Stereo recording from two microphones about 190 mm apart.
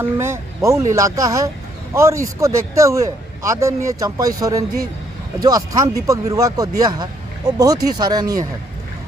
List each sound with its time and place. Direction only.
0.0 s a man's voice: 10° right (ahead or behind)